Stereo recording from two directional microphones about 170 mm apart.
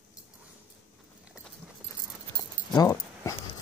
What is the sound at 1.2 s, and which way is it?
Clip-clop, 5° right (ahead or behind).